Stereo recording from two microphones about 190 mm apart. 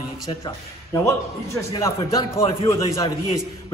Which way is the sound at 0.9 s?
15° left (ahead or behind).